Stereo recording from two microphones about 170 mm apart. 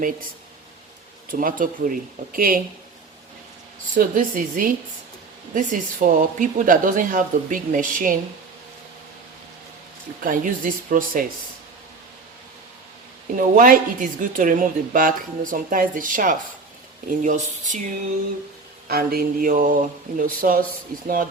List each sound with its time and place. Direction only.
1.3 s a woman's voice: 55° right (ahead or behind)
3.9 s a woman's voice: 50° right (ahead or behind)
10.2 s a woman's voice: 50° right (ahead or behind)
13.3 s a woman's voice: 50° right (ahead or behind)
18.9 s speech: 65° right (ahead or behind)